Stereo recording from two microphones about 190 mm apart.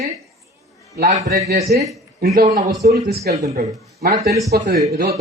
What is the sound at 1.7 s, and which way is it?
A man's voice, 55° right (ahead or behind).